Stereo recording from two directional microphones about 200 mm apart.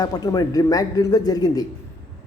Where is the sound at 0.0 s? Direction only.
20° left (ahead or behind).